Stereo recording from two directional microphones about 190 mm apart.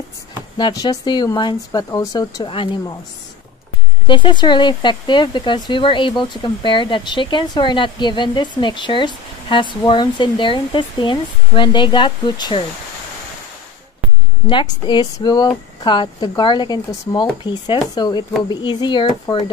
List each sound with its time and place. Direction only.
0.6 s speech: 25° left (ahead or behind)
4.1 s speech: 25° left (ahead or behind)
14.5 s speech: 25° left (ahead or behind)